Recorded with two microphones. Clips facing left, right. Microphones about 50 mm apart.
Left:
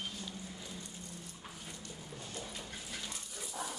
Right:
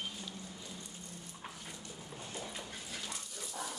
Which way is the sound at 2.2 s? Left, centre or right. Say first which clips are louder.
Right 2 dB; centre.